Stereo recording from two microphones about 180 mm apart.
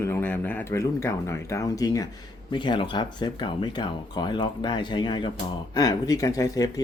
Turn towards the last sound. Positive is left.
turn(degrees=20)  # may be behind; listen again after turning